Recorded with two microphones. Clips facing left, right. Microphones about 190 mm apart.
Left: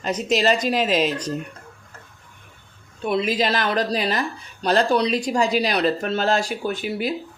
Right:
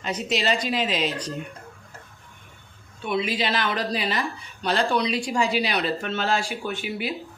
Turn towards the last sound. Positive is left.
turn(degrees=40)  # may be behind; listen again after turning